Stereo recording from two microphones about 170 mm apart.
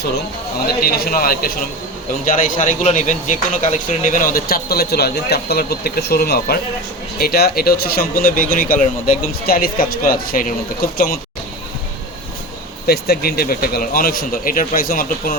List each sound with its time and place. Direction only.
0.6 s speech: 65° left (ahead or behind)
12.9 s speech: 65° left (ahead or behind)